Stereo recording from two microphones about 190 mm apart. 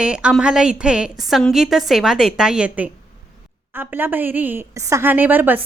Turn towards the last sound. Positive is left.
turn(degrees=-10)  # may be behind; listen again after turning